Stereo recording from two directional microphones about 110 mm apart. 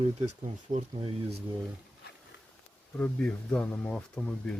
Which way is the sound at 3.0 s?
5° left (ahead or behind).